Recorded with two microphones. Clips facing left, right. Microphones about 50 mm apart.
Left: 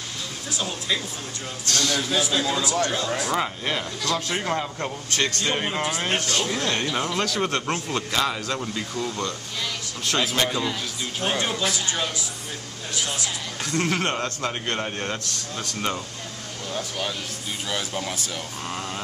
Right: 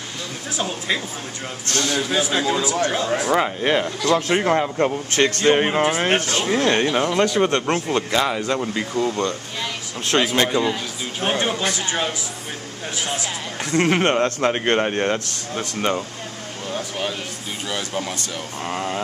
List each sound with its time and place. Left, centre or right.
0.6 s speech: right
2.0 s speech: right
4.3 s speech: right
8.9 s speech: right
10.5 s speech: centre
17.6 s speech: centre
18.7 s speech: right